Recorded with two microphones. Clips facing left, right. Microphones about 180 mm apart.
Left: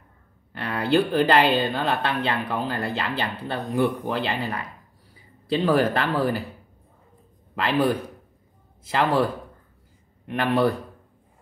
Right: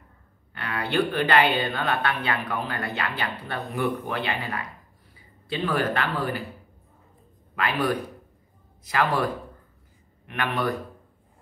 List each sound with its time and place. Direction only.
0.6 s speech: 35° left (ahead or behind)
7.5 s speech: 30° left (ahead or behind)
10.3 s speech: 30° left (ahead or behind)